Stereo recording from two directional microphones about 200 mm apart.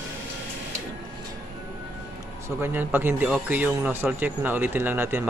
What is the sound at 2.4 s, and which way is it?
Speech, 10° right (ahead or behind).